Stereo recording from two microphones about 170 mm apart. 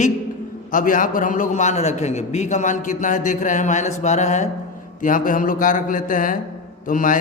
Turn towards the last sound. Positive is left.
turn(degrees=55)  # may be behind; listen again after turning